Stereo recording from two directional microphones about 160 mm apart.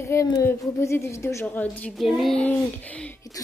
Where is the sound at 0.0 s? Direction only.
20° left (ahead or behind).